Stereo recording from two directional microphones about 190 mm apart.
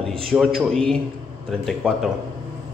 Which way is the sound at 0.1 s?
5° left (ahead or behind).